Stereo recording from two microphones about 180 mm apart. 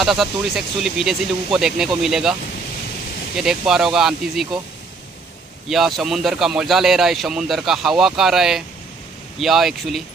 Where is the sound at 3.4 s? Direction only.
5° right (ahead or behind).